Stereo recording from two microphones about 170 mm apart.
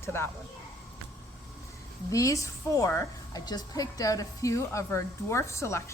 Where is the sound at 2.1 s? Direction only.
20° left (ahead or behind).